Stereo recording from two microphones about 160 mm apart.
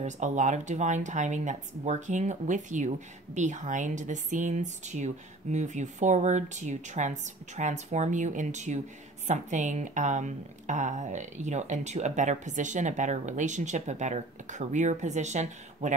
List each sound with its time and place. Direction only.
0.0 s a woman's voice: 50° right (ahead or behind)